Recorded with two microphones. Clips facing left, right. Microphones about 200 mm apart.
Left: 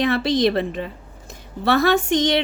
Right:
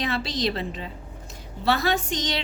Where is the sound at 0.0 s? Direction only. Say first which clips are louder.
Left 8 dB; 55° left (ahead or behind).